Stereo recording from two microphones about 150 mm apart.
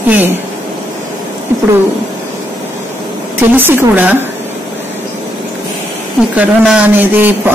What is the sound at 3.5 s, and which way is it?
Speech, 15° right (ahead or behind).